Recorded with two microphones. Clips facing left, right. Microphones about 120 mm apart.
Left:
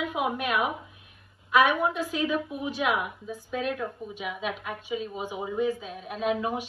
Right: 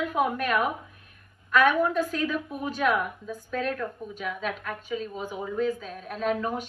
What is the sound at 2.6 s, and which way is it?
Speech, 45° right (ahead or behind).